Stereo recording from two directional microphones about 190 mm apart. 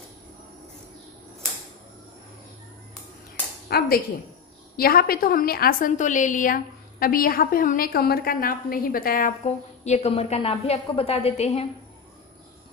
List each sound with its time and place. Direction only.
3.6 s a woman's voice: 55° left (ahead or behind)
9.8 s a woman's voice: 35° left (ahead or behind)